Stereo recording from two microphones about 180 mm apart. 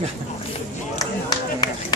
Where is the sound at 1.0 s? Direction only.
20° left (ahead or behind).